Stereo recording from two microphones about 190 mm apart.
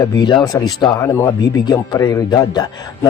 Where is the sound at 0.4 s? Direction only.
20° left (ahead or behind).